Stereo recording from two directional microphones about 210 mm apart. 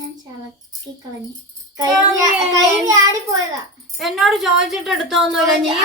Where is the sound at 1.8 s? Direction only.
15° right (ahead or behind).